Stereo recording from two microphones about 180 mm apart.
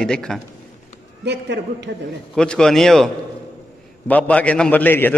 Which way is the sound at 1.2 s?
70° right (ahead or behind).